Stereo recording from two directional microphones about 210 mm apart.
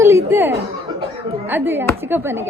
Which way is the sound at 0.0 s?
15° right (ahead or behind).